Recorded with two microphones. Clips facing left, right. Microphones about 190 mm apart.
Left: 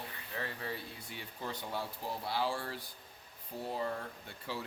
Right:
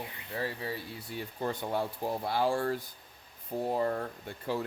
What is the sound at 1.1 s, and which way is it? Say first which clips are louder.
Speech: right 9 dB; 50° right (ahead or behind).